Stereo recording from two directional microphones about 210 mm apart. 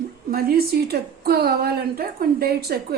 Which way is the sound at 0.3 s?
45° right (ahead or behind).